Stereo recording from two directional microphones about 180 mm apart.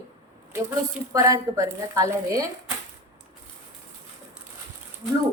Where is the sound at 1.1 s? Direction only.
20° right (ahead or behind).